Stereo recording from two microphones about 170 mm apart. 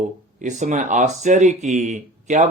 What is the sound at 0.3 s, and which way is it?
Speech, 45° right (ahead or behind).